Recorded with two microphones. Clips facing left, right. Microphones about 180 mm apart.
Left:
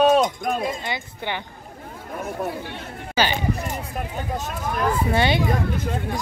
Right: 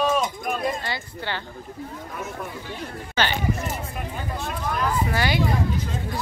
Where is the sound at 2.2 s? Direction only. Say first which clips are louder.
Left 6 dB; 60° left (ahead or behind).